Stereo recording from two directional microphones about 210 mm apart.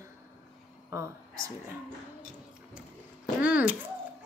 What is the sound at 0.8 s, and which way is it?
Speech, 15° right (ahead or behind).